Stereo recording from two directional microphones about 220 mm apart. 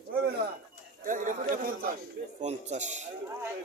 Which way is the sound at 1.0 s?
35° right (ahead or behind).